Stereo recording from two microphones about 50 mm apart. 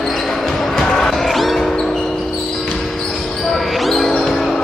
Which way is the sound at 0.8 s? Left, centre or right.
Centre.